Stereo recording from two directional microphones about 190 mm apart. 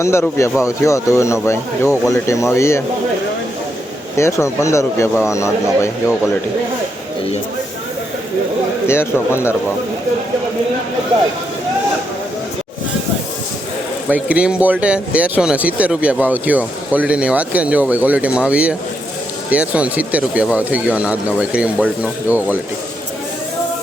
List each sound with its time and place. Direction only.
0.0 s speech: 15° left (ahead or behind)
4.2 s speech: 15° left (ahead or behind)
8.9 s speech: 15° left (ahead or behind)
14.1 s speech: 5° right (ahead or behind)